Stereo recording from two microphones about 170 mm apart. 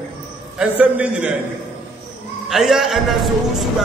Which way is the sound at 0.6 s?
10° right (ahead or behind).